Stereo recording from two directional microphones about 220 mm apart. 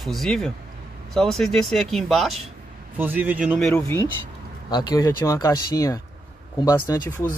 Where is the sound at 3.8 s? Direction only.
10° left (ahead or behind).